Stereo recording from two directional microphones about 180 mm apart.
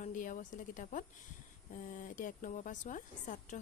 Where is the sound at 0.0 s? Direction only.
45° left (ahead or behind).